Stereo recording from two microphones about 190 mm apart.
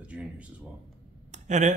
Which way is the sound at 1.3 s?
40° right (ahead or behind).